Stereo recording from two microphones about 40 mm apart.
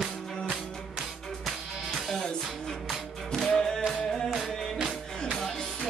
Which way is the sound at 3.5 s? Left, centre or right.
Centre.